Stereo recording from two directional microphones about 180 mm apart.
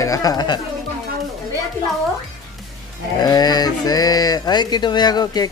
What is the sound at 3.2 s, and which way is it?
Speech, 20° left (ahead or behind).